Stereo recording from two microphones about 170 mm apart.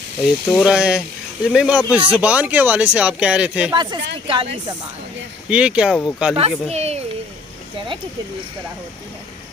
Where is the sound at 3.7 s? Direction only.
25° right (ahead or behind).